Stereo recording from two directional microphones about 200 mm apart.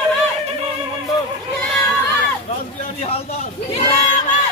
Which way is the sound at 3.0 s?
30° left (ahead or behind).